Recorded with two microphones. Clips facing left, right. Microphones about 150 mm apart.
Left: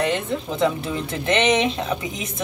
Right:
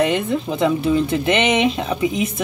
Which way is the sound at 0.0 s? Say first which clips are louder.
Right 4 dB; 10° right (ahead or behind).